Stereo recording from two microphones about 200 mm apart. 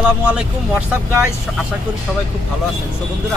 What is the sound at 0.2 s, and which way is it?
Speech, 5° right (ahead or behind).